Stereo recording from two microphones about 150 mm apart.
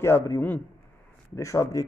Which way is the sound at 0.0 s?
15° left (ahead or behind).